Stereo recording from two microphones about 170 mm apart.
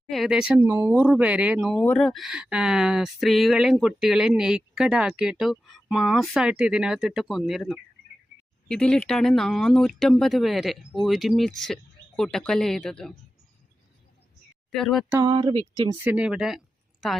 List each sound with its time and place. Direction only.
0.1 s speech: centre (ahead or behind)
1.8 s speech: 5° left (ahead or behind)
14.7 s speech: centre (ahead or behind)
15.2 s speech: 30° right (ahead or behind)
16.0 s speech: 5° right (ahead or behind)